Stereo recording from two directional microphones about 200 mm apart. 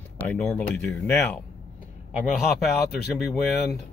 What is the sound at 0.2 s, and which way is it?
Speech, 5° left (ahead or behind).